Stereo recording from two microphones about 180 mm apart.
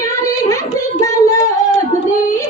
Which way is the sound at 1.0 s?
20° left (ahead or behind).